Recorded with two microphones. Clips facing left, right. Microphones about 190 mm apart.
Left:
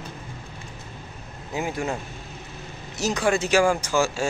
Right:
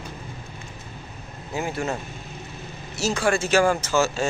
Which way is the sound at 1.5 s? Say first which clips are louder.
Even; 15° left (ahead or behind).